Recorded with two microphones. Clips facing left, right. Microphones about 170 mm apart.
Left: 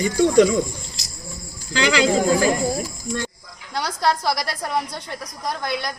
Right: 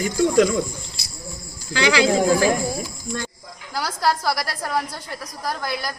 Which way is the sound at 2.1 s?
5° right (ahead or behind).